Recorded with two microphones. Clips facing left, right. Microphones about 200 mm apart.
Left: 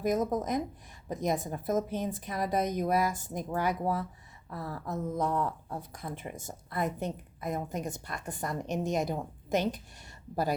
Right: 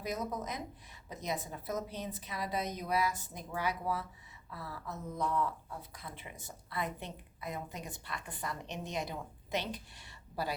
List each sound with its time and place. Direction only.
0.0 s speech: 50° left (ahead or behind)